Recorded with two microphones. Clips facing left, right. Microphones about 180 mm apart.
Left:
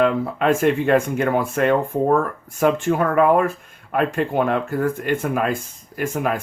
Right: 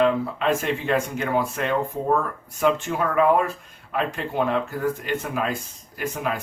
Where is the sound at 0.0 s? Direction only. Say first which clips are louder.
Left 2 dB; 55° left (ahead or behind).